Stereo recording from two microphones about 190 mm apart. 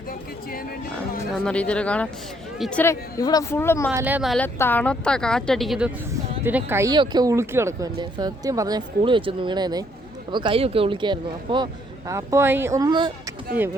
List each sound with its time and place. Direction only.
1.5 s speech: 5° left (ahead or behind)
3.9 s speech: 10° right (ahead or behind)
4.4 s speech: 10° left (ahead or behind); by 13.1 s 20° right (ahead or behind)